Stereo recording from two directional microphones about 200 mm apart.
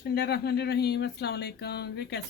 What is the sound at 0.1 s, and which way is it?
Speech, 55° left (ahead or behind).